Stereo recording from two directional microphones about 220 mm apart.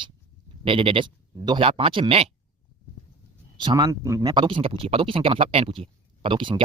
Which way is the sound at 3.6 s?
15° right (ahead or behind).